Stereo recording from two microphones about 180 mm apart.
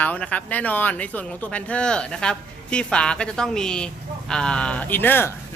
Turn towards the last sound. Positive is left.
turn(degrees=10)  # may be behind; listen again after turning